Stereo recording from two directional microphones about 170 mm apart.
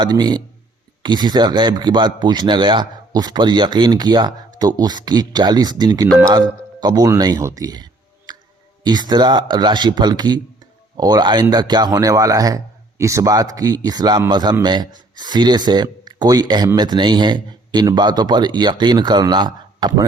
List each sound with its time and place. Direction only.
0.0 s speech: 25° right (ahead or behind)
8.3 s clicking: 25° right (ahead or behind)
8.8 s speech: 25° right (ahead or behind)